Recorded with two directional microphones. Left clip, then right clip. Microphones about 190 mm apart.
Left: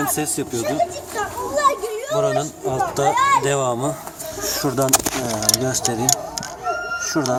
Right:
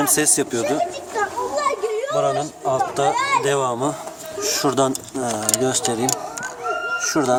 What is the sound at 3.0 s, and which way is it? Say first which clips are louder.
Speech: left 5 dB; 20° right (ahead or behind).